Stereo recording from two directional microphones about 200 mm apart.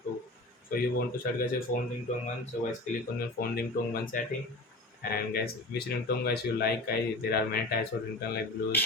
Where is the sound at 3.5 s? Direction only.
45° left (ahead or behind).